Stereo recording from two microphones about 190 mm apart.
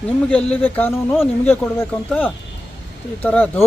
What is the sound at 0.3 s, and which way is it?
Speech, 5° left (ahead or behind).